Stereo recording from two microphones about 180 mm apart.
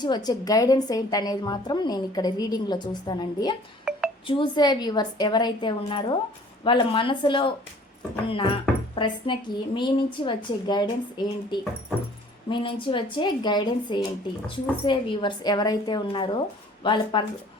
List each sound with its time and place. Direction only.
0.0 s a woman's voice: 25° left (ahead or behind)
3.9 s a sound: 5° right (ahead or behind)
4.3 s a woman's voice: 25° left (ahead or behind)